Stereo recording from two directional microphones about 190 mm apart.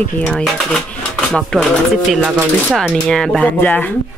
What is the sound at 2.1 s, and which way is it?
Speech, 5° right (ahead or behind).